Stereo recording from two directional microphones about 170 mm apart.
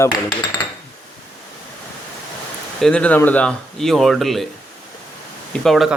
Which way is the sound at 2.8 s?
5° left (ahead or behind).